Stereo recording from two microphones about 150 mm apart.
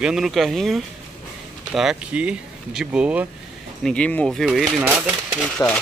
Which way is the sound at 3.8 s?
5° left (ahead or behind).